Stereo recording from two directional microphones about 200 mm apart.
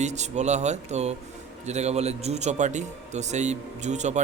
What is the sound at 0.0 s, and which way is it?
Speech, 35° right (ahead or behind).